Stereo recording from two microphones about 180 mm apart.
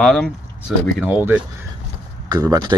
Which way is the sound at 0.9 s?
10° right (ahead or behind).